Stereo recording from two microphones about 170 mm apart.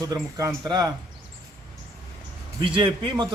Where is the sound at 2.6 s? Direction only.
30° right (ahead or behind).